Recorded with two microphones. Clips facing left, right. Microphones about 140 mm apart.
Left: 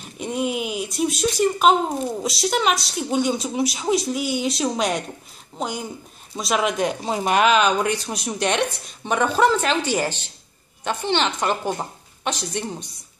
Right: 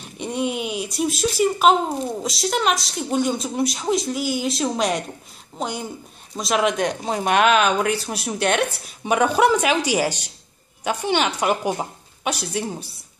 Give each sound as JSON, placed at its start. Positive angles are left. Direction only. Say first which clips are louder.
{"t": 0.0, "sound": "a woman's voice", "louder": "even", "side_deg": 0}